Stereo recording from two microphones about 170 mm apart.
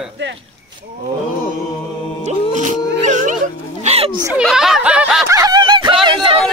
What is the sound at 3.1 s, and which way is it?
Music, 45° right (ahead or behind).